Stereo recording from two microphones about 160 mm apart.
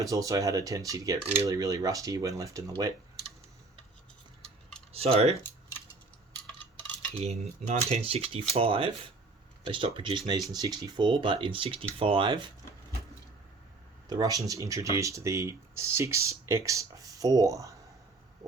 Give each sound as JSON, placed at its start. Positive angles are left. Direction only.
{"t": 0.0, "sound": "speech", "side_deg": -20}
{"t": 4.9, "sound": "speech", "side_deg": -35}
{"t": 7.2, "sound": "speech", "side_deg": -40}
{"t": 14.1, "sound": "speech", "side_deg": -25}